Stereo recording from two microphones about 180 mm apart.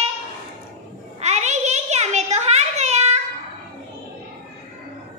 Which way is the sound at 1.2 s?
40° right (ahead or behind).